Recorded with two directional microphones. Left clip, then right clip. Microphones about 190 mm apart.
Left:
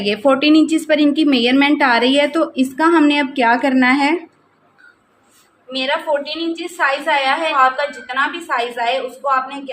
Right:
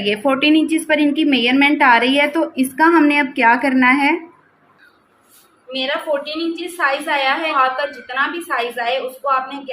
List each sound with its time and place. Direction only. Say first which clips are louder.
0.0 s a woman's voice: left 2 dB; 15° left (ahead or behind)
5.7 s a woman's voice: left 2 dB; 15° left (ahead or behind)